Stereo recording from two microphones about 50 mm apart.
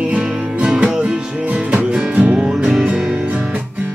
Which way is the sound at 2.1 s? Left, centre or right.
Right.